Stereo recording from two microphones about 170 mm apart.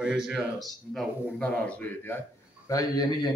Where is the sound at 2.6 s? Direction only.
20° left (ahead or behind).